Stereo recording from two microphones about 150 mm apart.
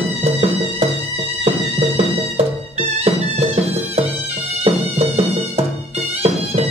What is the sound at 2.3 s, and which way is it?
Music, 40° right (ahead or behind).